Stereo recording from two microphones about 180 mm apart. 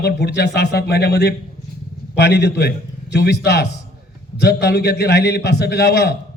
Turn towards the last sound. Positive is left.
turn(degrees=65)  # may be behind; listen again after turning